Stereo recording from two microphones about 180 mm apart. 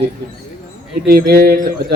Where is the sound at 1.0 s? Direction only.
60° right (ahead or behind).